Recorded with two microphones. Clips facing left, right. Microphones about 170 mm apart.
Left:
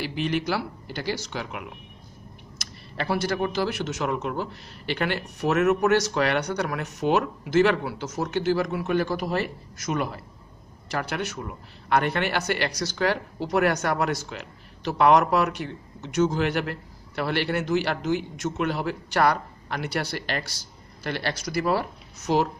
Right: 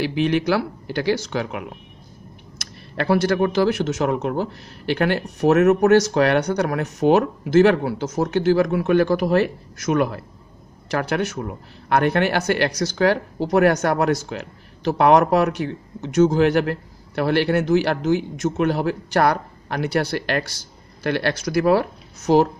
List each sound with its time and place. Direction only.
0.0 s speech: 65° right (ahead or behind)
22.2 s speech: 45° right (ahead or behind)